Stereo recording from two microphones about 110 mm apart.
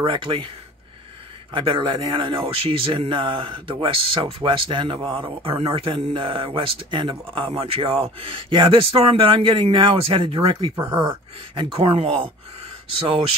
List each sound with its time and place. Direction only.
0.0 s a man's voice: 50° right (ahead or behind)
1.5 s a man's voice: 55° right (ahead or behind)